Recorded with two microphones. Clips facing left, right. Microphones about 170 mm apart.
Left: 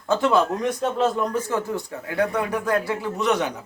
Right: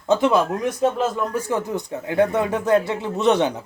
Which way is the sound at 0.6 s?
Centre (ahead or behind).